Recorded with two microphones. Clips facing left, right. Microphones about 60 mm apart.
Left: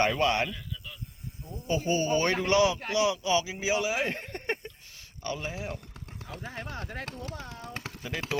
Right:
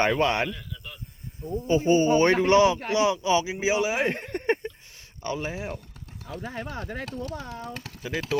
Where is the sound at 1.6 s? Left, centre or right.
Right.